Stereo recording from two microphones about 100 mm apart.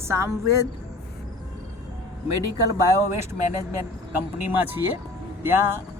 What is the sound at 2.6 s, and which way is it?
Speech, 35° right (ahead or behind).